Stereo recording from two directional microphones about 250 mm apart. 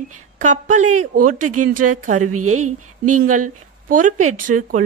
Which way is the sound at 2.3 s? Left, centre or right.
Right.